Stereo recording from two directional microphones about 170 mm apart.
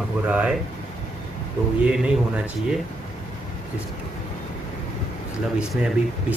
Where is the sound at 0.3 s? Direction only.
5° right (ahead or behind).